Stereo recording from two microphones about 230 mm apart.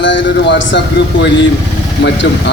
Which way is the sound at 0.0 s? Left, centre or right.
Left.